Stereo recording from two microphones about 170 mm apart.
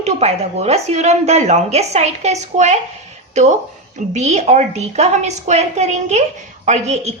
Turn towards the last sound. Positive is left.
turn(degrees=-40)  # may be behind; listen again after turning